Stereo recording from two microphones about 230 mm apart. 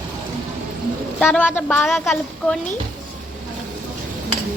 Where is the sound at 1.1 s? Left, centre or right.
Centre.